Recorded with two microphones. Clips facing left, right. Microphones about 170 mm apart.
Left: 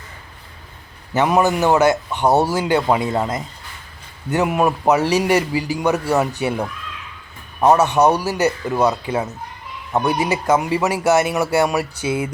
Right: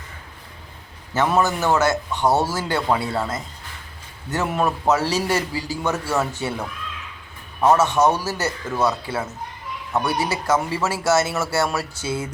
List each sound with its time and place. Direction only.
1.1 s speech: 15° left (ahead or behind)
7.6 s speech: 15° left (ahead or behind)